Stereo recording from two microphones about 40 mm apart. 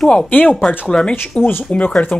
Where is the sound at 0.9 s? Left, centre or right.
Centre.